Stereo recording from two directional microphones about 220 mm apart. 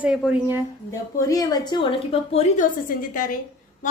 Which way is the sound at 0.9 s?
15° left (ahead or behind).